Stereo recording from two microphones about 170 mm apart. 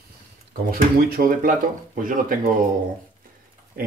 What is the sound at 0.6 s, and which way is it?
Speech, 55° right (ahead or behind).